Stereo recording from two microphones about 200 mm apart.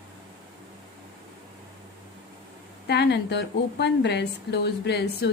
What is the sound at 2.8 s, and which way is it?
A woman's voice, 55° left (ahead or behind).